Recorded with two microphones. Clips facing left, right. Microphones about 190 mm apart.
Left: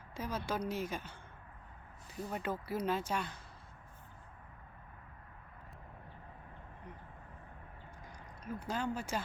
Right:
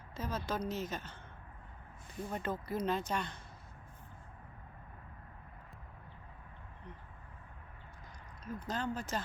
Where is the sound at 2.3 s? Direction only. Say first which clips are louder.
Even; 10° left (ahead or behind).